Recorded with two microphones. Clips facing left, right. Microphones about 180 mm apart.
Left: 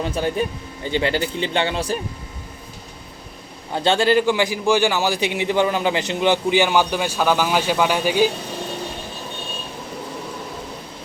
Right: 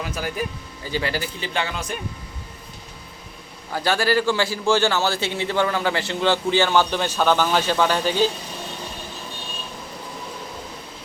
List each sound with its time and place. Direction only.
0.0 s speech: 30° left (ahead or behind)
3.7 s a man's voice: 25° left (ahead or behind)